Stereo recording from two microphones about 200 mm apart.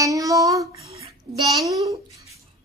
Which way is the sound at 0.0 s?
15° right (ahead or behind).